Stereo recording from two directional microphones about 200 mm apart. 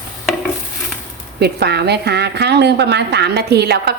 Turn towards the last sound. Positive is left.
turn(degrees=-55)  # may be behind; listen again after turning